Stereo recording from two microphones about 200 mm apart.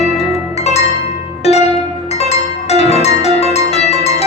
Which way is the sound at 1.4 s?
30° left (ahead or behind).